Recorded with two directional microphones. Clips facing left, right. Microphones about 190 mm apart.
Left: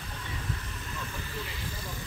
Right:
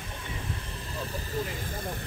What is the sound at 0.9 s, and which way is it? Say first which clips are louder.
Vehicle: right 5 dB; 35° right (ahead or behind).